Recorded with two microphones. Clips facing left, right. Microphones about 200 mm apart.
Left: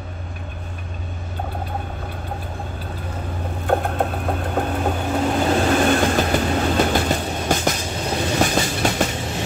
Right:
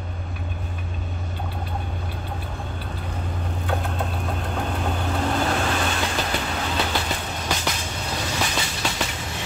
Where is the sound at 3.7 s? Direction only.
55° left (ahead or behind).